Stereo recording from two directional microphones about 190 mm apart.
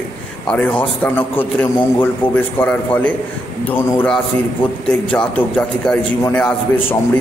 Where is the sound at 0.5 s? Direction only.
5° left (ahead or behind).